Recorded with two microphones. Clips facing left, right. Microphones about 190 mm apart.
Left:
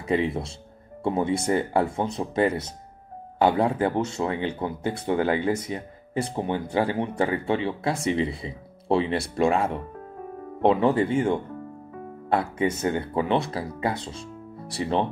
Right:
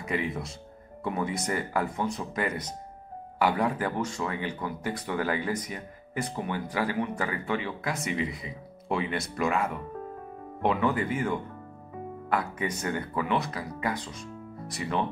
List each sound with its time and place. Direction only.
0.0 s speech: 30° left (ahead or behind)